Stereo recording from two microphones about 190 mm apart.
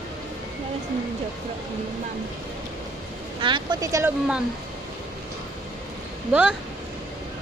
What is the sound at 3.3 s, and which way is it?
Speech, 25° right (ahead or behind).